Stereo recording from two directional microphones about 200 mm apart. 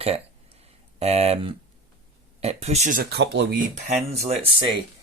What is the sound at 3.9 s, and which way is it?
Speech, 30° right (ahead or behind).